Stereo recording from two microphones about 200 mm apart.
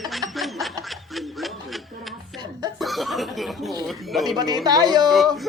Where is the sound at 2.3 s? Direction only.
20° right (ahead or behind).